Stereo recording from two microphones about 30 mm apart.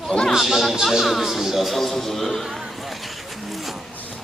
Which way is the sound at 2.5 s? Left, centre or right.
Centre.